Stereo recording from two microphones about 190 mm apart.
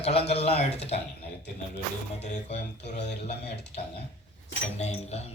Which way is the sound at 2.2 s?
35° left (ahead or behind).